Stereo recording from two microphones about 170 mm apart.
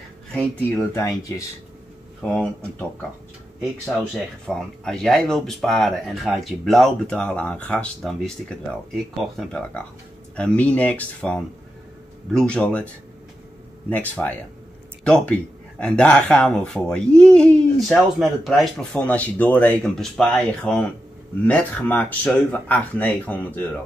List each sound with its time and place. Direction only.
0.7 s speech: 15° left (ahead or behind)
3.9 s speech: 5° left (ahead or behind)